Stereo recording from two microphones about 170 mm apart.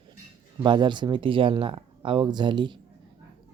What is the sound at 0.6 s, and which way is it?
Speech, 25° right (ahead or behind).